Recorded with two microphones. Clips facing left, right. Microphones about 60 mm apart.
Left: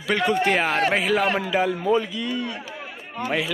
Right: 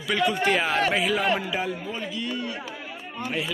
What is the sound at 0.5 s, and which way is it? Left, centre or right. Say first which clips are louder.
Speech: left 2 dB; left.